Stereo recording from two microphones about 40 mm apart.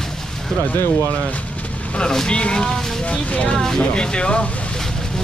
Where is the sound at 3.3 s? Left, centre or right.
Left.